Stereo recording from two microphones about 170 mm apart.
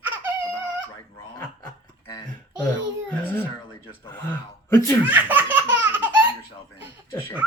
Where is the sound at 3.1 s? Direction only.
10° left (ahead or behind).